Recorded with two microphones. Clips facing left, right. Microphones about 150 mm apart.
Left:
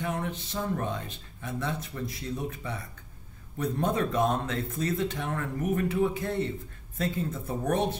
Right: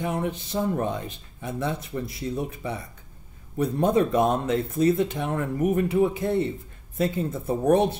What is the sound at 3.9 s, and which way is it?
Speech, 15° right (ahead or behind).